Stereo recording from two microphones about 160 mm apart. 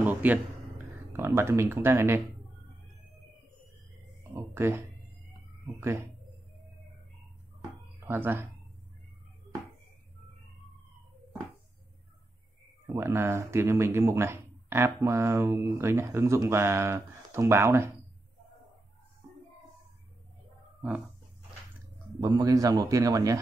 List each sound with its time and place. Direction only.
0.0 s a sound: 10° right (ahead or behind)
1.1 s speech: 15° right (ahead or behind)
4.2 s speech: 15° right (ahead or behind)
8.1 s speech: 15° right (ahead or behind)
12.8 s speech: 15° right (ahead or behind)
22.2 s a man's voice: 20° right (ahead or behind)